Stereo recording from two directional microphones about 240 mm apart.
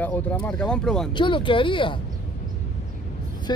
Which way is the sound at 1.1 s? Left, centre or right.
Left.